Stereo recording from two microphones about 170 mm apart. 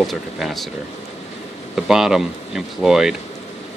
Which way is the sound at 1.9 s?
5° right (ahead or behind).